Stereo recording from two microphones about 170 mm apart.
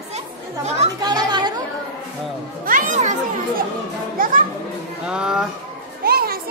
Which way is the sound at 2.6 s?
50° right (ahead or behind).